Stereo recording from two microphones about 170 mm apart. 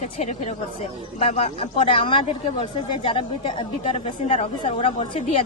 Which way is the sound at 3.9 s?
45° left (ahead or behind).